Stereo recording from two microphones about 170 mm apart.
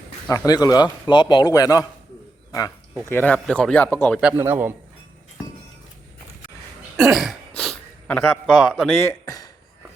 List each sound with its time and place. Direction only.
0.3 s a man's voice: 20° left (ahead or behind)
3.1 s speech: 10° left (ahead or behind)
4.2 s a man's voice: 10° right (ahead or behind)
6.9 s throat clearing: centre (ahead or behind)
9.0 s speech: 20° left (ahead or behind)